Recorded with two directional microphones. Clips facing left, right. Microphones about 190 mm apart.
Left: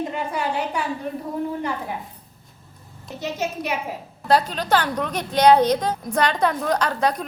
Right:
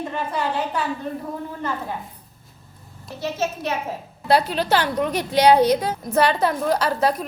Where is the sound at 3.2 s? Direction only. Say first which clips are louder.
Right 1 dB; 15° left (ahead or behind).